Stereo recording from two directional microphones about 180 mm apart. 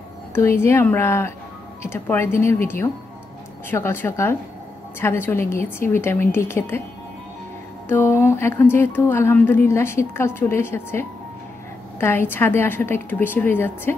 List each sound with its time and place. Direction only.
0.3 s speech: 15° left (ahead or behind)
7.9 s speech: 15° left (ahead or behind)